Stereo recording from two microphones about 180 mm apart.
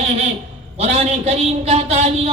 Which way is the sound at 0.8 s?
35° right (ahead or behind).